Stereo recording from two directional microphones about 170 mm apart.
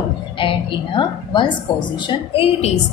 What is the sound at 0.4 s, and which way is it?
A woman's voice, 30° left (ahead or behind).